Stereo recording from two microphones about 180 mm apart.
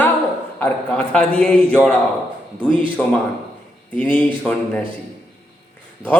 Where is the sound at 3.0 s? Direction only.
5° left (ahead or behind).